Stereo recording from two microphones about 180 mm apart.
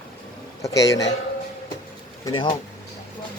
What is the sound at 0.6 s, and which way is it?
Speech, 20° left (ahead or behind).